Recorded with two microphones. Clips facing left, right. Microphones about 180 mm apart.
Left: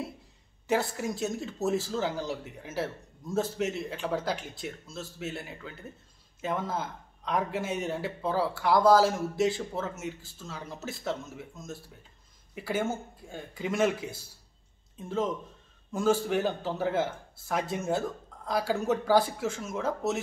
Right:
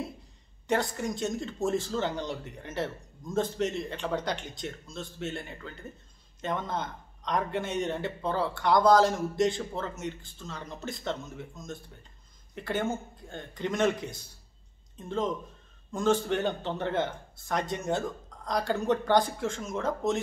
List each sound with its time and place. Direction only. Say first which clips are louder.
0.7 s a man's voice: even; 5° left (ahead or behind)